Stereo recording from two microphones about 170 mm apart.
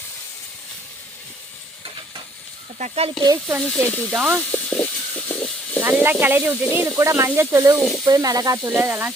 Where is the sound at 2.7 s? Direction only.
40° right (ahead or behind).